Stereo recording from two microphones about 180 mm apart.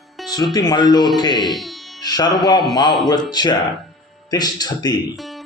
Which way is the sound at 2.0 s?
20° left (ahead or behind).